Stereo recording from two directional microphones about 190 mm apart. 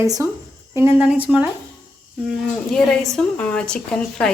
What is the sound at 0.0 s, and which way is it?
Speech, 15° right (ahead or behind).